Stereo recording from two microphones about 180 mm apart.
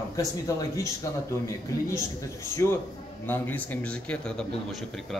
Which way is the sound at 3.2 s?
10° left (ahead or behind).